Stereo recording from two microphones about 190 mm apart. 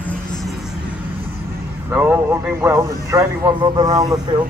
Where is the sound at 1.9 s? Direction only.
10° right (ahead or behind).